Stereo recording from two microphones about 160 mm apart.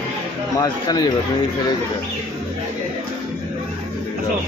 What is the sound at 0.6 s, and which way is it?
Speech, 25° left (ahead or behind).